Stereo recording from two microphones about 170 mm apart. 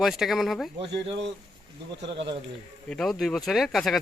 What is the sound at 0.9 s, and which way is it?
Speech, 90° right.